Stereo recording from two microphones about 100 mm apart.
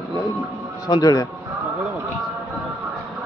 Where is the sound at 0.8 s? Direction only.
40° left (ahead or behind).